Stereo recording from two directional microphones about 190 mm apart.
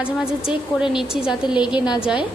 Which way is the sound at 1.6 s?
25° left (ahead or behind).